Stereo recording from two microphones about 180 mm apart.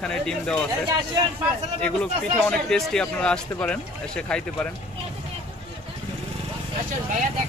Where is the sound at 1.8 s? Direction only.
5° left (ahead or behind).